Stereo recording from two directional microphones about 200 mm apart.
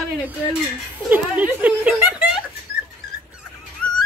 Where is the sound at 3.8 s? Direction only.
5° left (ahead or behind).